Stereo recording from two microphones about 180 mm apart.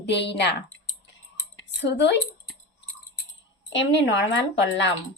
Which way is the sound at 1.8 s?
75° left (ahead or behind).